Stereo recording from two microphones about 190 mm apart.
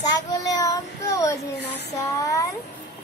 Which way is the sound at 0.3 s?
20° left (ahead or behind).